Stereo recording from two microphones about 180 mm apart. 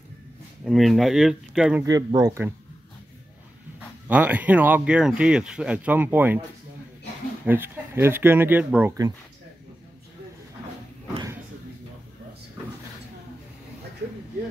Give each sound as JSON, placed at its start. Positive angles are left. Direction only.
{"t": 0.7, "sound": "speech", "side_deg": 0}
{"t": 1.9, "sound": "speech", "side_deg": -20}
{"t": 4.1, "sound": "speech", "side_deg": -10}
{"t": 7.4, "sound": "speech", "side_deg": -10}